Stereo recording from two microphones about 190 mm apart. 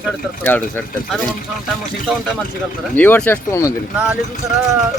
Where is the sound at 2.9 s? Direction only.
10° left (ahead or behind).